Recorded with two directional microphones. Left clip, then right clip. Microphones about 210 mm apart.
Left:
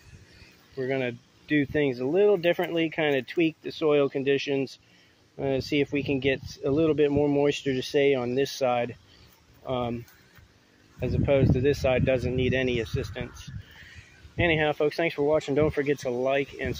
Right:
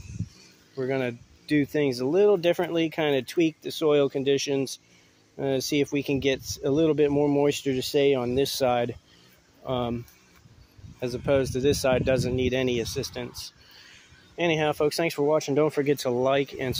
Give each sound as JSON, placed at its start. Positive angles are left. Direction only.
{"t": 0.7, "sound": "speech", "side_deg": -20}
{"t": 11.0, "sound": "speech", "side_deg": -15}
{"t": 16.0, "sound": "speech", "side_deg": -25}